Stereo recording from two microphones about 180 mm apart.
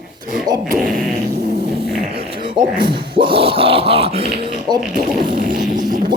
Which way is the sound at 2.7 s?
25° right (ahead or behind).